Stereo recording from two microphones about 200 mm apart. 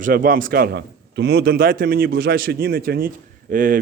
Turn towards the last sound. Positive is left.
turn(degrees=-45)  # may be behind; listen again after turning